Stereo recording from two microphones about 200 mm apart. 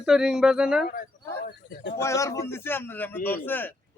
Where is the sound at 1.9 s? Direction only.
15° left (ahead or behind).